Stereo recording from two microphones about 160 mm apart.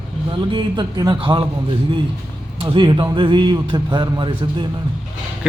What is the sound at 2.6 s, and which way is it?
A man's voice, 30° right (ahead or behind).